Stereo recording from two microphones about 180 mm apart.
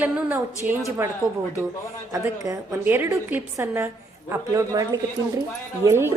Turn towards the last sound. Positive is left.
turn(degrees=-15)  # may be behind; listen again after turning